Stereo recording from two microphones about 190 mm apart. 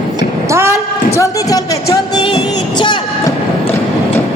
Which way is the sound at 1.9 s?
20° left (ahead or behind).